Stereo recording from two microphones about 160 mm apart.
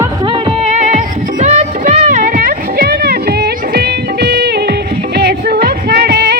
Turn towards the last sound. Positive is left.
turn(degrees=-90)